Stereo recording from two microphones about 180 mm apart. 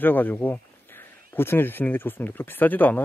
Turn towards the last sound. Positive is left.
turn(degrees=10)  # may be behind; listen again after turning